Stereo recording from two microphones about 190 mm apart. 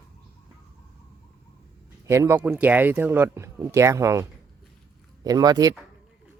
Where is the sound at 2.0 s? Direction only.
15° right (ahead or behind).